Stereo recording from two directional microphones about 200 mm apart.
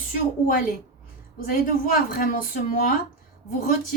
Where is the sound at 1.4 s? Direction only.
45° left (ahead or behind).